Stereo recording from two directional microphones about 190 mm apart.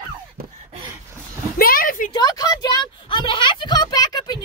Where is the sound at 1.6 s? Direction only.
50° left (ahead or behind).